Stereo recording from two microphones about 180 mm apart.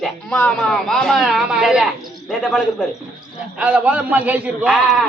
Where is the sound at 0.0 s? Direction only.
5° left (ahead or behind).